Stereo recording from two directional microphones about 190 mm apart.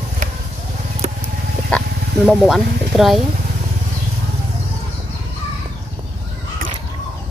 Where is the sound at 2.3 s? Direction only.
Centre (ahead or behind).